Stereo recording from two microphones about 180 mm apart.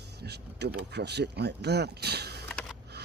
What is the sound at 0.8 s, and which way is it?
Speech, 70° right (ahead or behind).